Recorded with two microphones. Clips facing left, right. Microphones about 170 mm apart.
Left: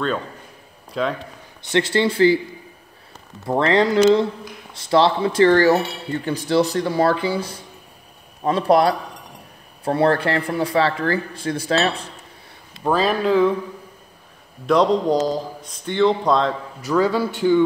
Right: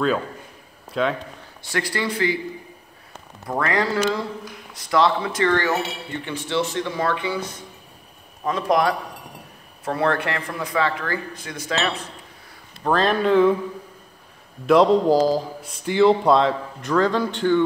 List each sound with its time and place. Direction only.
1.7 s speech: 25° left (ahead or behind)
3.4 s speech: 25° left (ahead or behind)
12.8 s a man's voice: 5° left (ahead or behind)
14.7 s a man's voice: centre (ahead or behind)